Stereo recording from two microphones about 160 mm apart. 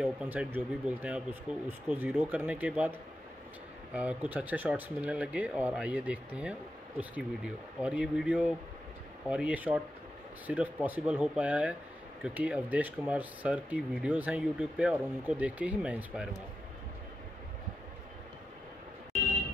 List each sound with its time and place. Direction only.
0.0 s speech: 5° right (ahead or behind)